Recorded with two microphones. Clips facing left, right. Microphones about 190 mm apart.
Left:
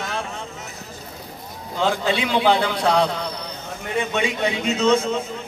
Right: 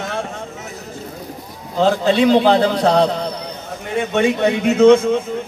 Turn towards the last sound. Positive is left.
turn(degrees=-55)  # may be behind; listen again after turning